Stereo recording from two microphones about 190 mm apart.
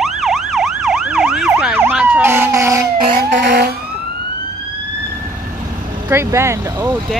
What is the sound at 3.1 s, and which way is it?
Vehicle, 60° right (ahead or behind).